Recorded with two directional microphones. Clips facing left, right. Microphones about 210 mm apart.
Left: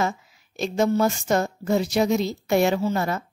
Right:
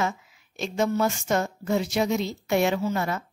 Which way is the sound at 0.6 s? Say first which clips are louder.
Left 3 dB; 35° left (ahead or behind).